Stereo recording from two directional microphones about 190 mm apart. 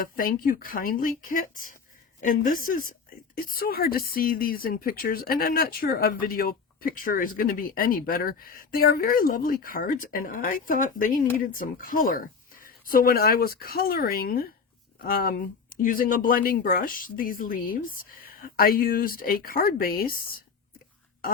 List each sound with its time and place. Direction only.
0.0 s speech: 50° left (ahead or behind)